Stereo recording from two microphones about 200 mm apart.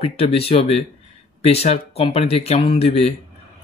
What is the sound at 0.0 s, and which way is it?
Speech, 30° left (ahead or behind).